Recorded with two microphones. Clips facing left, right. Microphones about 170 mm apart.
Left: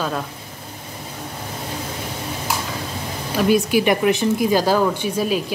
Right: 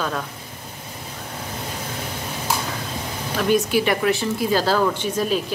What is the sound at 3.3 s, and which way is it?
Speech, 10° left (ahead or behind).